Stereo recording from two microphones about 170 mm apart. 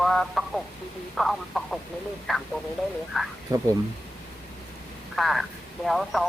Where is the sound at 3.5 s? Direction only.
20° right (ahead or behind).